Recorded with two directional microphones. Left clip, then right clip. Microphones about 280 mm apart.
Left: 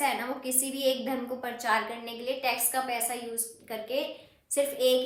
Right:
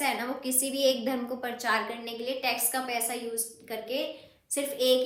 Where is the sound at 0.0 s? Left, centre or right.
Centre.